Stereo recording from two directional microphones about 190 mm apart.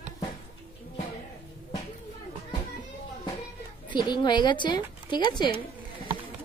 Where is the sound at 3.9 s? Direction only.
25° left (ahead or behind).